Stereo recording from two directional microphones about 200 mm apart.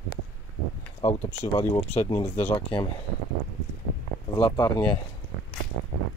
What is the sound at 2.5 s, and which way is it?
Speech, 25° left (ahead or behind).